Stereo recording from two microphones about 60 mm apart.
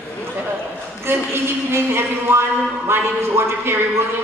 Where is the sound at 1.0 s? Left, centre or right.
Right.